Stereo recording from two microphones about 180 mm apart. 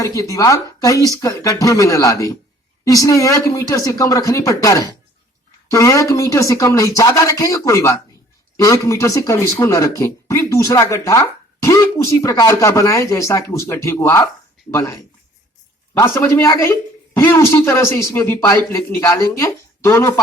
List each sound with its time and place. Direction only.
0.0 s speech: 15° left (ahead or behind)